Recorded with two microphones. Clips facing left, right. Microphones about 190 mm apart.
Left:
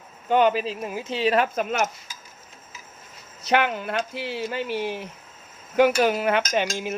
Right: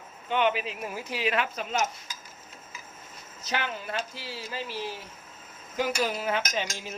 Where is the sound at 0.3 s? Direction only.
40° left (ahead or behind).